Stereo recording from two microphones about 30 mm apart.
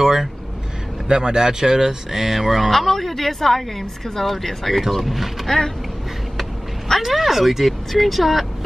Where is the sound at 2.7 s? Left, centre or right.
Centre.